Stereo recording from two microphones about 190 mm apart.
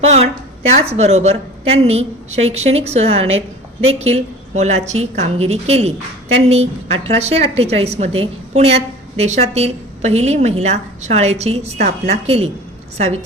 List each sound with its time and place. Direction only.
0.0 s a woman's voice: 35° right (ahead or behind)